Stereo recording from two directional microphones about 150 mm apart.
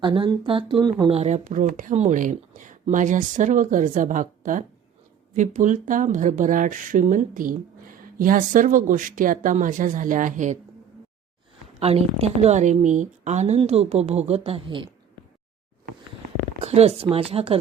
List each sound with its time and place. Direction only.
0.0 s speech: 30° right (ahead or behind)
1.1 s speech: 45° right (ahead or behind)
11.8 s a woman's voice: 45° right (ahead or behind)
16.6 s speech: 45° right (ahead or behind)